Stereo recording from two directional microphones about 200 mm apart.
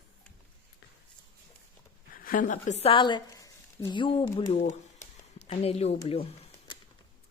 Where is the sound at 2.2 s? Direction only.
40° left (ahead or behind); by 4.4 s 25° left (ahead or behind).